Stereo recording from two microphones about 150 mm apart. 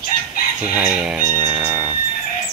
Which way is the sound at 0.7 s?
10° right (ahead or behind).